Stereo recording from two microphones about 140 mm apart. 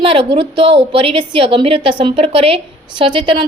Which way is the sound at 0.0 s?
40° right (ahead or behind).